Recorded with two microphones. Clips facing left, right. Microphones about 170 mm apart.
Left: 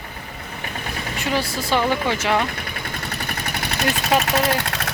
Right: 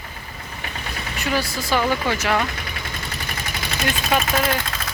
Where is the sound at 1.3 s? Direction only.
30° left (ahead or behind).